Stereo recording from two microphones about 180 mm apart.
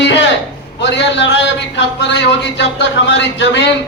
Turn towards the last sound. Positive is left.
turn(degrees=80)